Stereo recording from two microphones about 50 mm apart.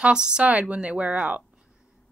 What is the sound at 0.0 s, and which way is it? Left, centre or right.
A woman's voice, centre.